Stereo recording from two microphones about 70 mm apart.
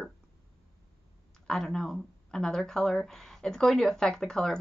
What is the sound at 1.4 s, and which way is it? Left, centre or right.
Speech, centre.